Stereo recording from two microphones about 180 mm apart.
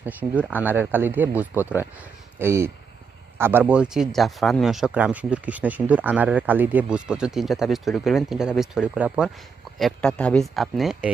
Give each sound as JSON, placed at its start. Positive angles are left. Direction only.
{"t": 0.0, "sound": "speech", "side_deg": -10}